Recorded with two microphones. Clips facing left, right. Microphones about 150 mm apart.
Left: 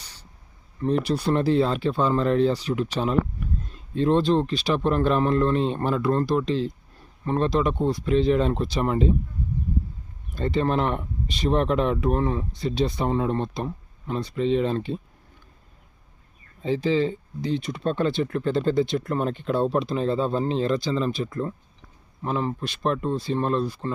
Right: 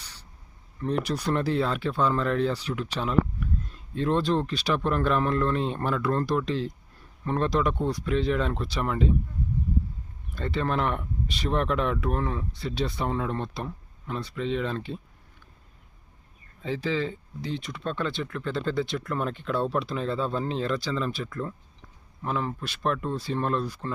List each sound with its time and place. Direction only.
0.8 s speech: 30° left (ahead or behind)
10.3 s speech: 30° left (ahead or behind)
16.6 s speech: 30° left (ahead or behind)